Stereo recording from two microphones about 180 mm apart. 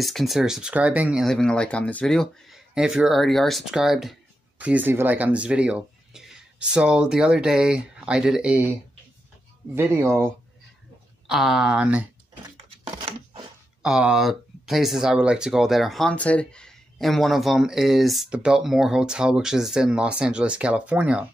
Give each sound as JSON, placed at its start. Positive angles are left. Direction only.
{"t": 0.0, "sound": "speech", "side_deg": 0}
{"t": 1.2, "sound": "speech", "side_deg": 5}
{"t": 9.8, "sound": "speech", "side_deg": -15}
{"t": 11.2, "sound": "speech", "side_deg": 0}
{"t": 12.9, "sound": "a sound", "side_deg": -20}
{"t": 13.8, "sound": "speech", "side_deg": -5}